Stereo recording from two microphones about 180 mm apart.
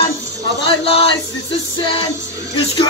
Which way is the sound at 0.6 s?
30° left (ahead or behind).